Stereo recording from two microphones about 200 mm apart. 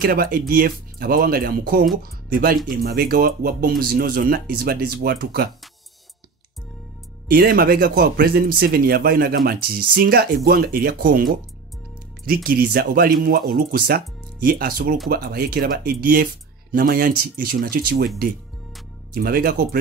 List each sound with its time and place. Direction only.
0.0 s speech: 50° right (ahead or behind)
7.2 s speech: 50° right (ahead or behind)
12.4 s speech: 50° right (ahead or behind)